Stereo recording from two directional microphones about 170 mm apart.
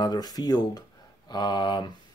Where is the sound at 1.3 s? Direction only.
25° left (ahead or behind).